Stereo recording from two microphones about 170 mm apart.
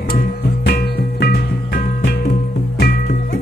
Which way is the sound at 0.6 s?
75° left (ahead or behind).